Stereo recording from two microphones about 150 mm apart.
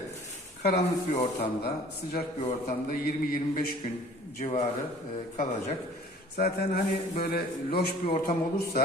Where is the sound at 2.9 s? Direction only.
65° left (ahead or behind).